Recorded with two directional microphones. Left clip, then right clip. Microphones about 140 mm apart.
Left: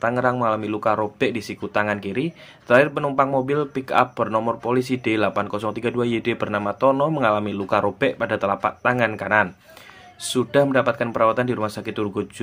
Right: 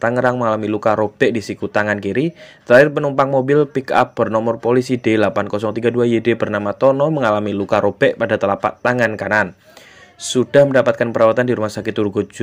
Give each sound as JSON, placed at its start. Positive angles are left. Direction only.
{"t": 0.0, "sound": "speech", "side_deg": -35}